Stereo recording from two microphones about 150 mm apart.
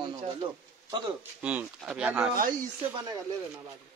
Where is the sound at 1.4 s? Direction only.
10° right (ahead or behind).